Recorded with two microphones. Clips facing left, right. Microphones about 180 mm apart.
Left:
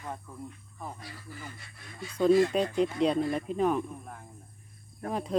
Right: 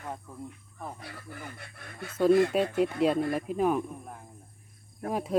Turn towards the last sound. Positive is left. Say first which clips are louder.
# right 2 dB
turn(degrees=-10)  # may be behind; listen again after turning